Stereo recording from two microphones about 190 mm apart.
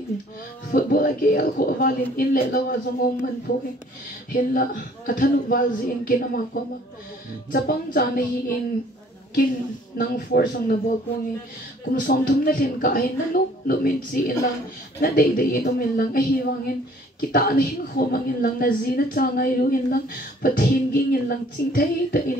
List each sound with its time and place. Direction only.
0.7 s a woman's voice: 50° left (ahead or behind)
9.9 s a woman's voice: 55° left (ahead or behind)
11.9 s a woman's voice: 50° left (ahead or behind)